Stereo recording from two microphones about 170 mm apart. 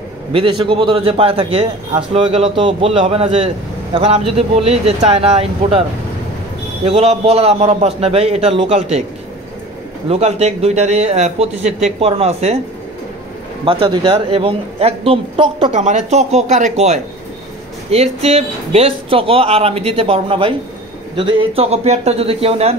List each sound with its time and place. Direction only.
0.3 s a man's voice: 30° right (ahead or behind)
10.0 s a man's voice: 40° right (ahead or behind)
13.7 s a man's voice: 30° right (ahead or behind)